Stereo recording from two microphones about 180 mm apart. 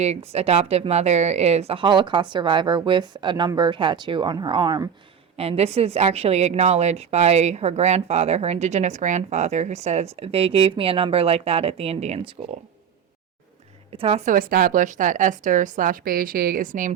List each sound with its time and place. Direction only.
0.3 s speech: 35° right (ahead or behind)
5.4 s speech: 35° right (ahead or behind)
13.9 s a woman's voice: 30° right (ahead or behind)